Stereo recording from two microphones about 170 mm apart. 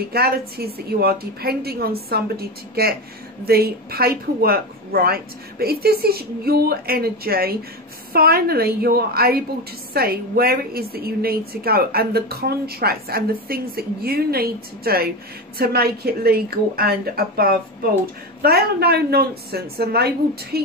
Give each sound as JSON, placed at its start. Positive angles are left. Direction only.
{"t": 0.1, "sound": "a woman's voice", "side_deg": -65}